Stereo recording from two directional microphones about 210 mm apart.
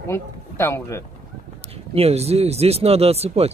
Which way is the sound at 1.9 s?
30° right (ahead or behind).